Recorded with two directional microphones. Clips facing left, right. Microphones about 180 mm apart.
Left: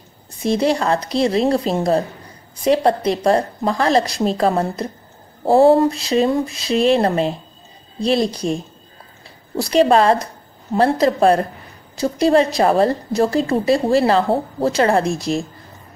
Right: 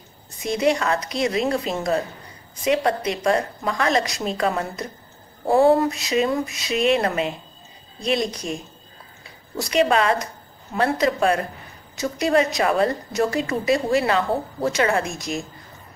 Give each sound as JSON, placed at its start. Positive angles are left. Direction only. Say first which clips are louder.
{"t": 0.4, "sound": "a woman's voice", "louder": "left 3 dB", "side_deg": 30}